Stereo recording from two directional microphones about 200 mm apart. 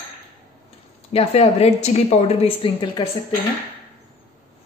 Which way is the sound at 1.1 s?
30° left (ahead or behind).